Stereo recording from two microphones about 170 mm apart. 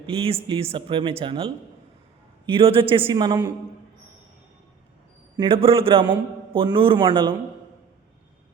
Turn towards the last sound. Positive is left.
turn(degrees=-30)  # may be behind; listen again after turning